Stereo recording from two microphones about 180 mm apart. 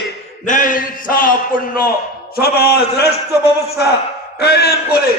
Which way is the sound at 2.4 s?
60° left (ahead or behind).